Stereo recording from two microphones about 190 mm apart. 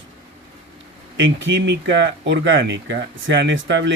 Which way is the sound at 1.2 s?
75° right (ahead or behind).